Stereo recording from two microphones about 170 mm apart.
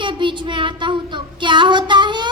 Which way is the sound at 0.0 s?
30° right (ahead or behind).